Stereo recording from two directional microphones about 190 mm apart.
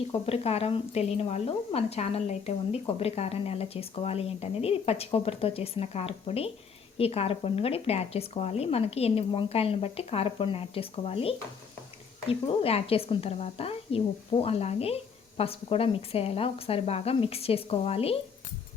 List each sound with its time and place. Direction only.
0.1 s speech: 30° left (ahead or behind)